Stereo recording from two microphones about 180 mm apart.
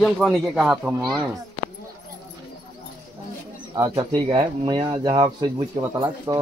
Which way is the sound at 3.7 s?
20° right (ahead or behind).